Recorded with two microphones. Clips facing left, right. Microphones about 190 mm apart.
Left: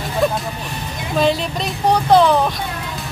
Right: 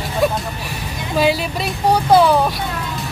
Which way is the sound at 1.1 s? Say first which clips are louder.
Even; 5° right (ahead or behind).